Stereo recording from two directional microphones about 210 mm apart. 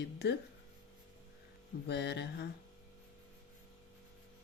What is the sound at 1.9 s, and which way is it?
Mantra, 55° left (ahead or behind).